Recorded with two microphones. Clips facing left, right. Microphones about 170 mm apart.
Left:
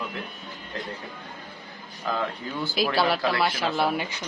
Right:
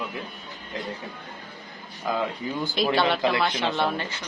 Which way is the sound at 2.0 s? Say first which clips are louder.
Right 2 dB; 10° right (ahead or behind).